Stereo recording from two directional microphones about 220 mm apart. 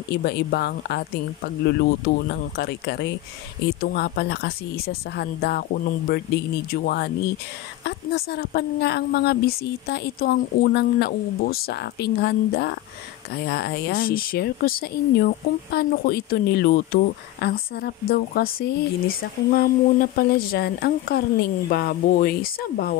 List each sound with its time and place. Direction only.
0.1 s speech: 50° left (ahead or behind)